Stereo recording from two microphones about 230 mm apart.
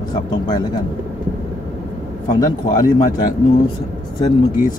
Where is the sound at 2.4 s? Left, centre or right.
Centre.